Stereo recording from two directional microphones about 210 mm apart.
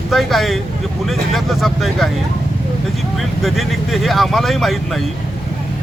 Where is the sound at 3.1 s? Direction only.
Centre (ahead or behind).